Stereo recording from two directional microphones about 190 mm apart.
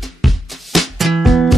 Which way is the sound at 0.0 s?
Centre (ahead or behind).